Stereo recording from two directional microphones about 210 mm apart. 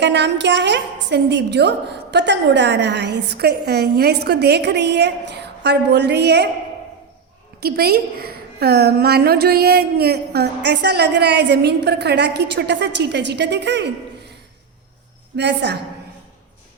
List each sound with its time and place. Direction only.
0.0 s a woman's voice: 55° right (ahead or behind)
7.6 s a woman's voice: 50° right (ahead or behind)
15.4 s a woman's voice: 55° right (ahead or behind)